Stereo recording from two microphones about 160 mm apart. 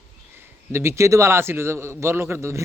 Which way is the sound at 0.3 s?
15° right (ahead or behind).